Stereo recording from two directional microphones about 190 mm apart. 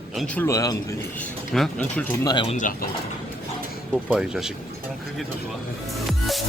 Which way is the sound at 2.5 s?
45° left (ahead or behind).